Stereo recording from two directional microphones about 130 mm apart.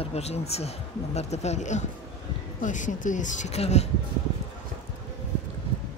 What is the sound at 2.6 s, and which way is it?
Speech, 75° left (ahead or behind).